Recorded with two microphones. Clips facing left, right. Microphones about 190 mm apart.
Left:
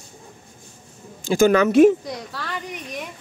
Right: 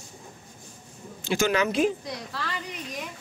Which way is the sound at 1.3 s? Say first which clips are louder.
Left 8 dB; 45° left (ahead or behind).